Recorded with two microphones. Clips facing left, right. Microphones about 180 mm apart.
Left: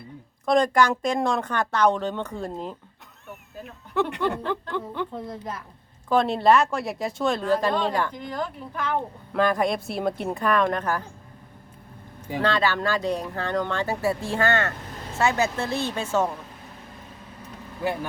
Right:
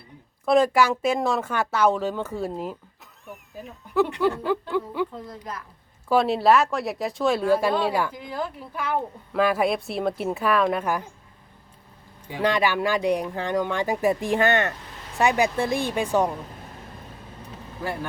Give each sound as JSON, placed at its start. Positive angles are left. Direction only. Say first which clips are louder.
{"t": 0.4, "sound": "speech", "louder": "right 1 dB", "side_deg": -5}
{"t": 5.5, "sound": "a woman's voice", "louder": "right 2 dB", "side_deg": 25}
{"t": 6.1, "sound": "speech", "louder": "even", "side_deg": -5}
{"t": 12.4, "sound": "speech", "louder": "right 1 dB", "side_deg": -15}